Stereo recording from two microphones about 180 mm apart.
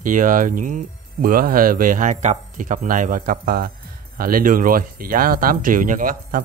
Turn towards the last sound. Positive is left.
turn(degrees=-50)  # may be behind; listen again after turning